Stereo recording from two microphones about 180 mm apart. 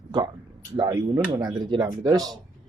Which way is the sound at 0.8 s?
20° right (ahead or behind).